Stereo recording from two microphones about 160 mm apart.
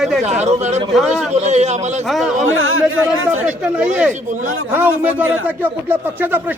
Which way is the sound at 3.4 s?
5° right (ahead or behind).